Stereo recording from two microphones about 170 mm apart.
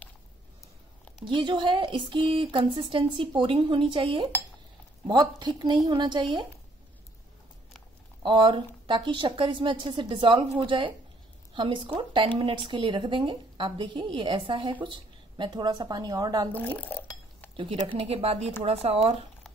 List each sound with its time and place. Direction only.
1.2 s a woman's voice: 30° right (ahead or behind)
8.2 s a woman's voice: 30° right (ahead or behind)
16.5 s speech: 10° left (ahead or behind)
17.9 s speech: 35° right (ahead or behind)